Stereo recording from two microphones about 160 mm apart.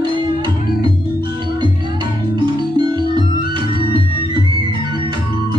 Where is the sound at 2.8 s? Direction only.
25° right (ahead or behind).